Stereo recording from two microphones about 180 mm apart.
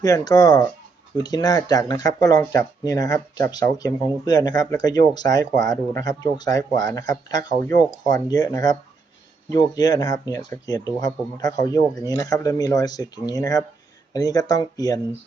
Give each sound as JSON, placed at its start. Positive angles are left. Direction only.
{"t": 0.0, "sound": "speech", "side_deg": 20}